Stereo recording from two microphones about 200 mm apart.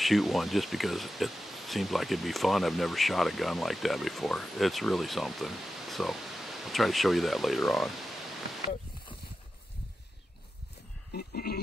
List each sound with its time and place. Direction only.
0.0 s speech: centre (ahead or behind)
11.1 s sheep: 50° left (ahead or behind)